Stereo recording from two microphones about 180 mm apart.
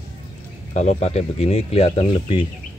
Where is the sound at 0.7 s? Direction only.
40° left (ahead or behind).